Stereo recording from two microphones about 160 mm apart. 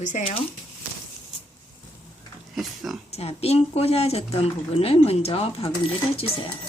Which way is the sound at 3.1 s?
40° left (ahead or behind).